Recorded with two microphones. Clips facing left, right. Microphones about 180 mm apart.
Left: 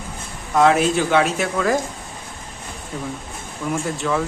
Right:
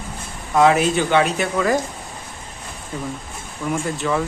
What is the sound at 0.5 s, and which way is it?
Speech, centre (ahead or behind).